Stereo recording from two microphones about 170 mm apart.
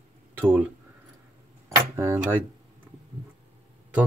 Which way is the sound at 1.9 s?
15° right (ahead or behind).